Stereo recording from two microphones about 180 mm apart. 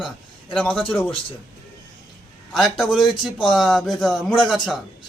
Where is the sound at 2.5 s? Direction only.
Centre (ahead or behind).